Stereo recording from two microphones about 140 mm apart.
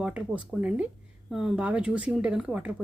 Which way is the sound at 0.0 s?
10° right (ahead or behind).